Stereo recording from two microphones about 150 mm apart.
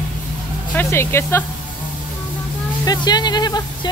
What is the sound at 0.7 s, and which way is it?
Speech, 15° left (ahead or behind).